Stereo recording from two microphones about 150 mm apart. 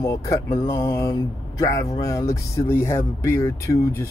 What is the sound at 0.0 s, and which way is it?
Speech, 25° left (ahead or behind).